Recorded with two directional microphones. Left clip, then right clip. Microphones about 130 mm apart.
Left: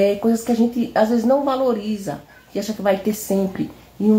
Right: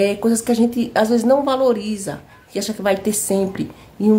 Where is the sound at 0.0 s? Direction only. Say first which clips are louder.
Even; 30° right (ahead or behind).